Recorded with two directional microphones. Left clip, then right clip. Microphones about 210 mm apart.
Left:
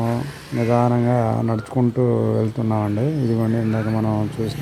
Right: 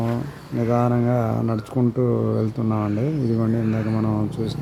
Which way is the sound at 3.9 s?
5° right (ahead or behind).